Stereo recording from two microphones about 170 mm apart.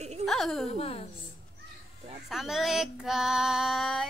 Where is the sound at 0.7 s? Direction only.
35° left (ahead or behind).